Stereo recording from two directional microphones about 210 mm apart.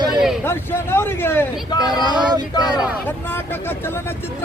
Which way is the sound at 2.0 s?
20° right (ahead or behind).